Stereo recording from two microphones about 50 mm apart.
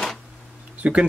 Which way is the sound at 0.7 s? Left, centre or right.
Right.